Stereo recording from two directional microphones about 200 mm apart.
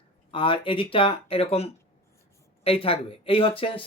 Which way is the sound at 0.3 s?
25° left (ahead or behind).